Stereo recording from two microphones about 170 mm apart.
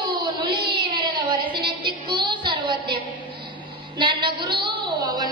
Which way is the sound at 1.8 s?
30° right (ahead or behind).